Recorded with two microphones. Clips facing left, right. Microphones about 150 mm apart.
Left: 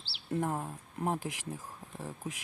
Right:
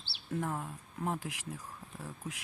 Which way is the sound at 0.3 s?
30° left (ahead or behind).